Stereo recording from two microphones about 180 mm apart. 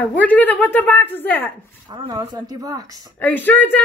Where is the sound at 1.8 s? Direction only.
25° right (ahead or behind).